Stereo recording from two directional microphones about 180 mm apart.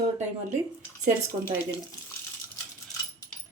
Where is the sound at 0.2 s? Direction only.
40° right (ahead or behind).